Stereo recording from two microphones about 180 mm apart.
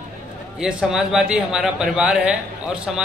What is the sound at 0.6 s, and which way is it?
A man's voice, 5° right (ahead or behind).